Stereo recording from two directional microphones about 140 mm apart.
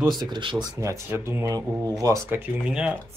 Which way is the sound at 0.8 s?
20° right (ahead or behind).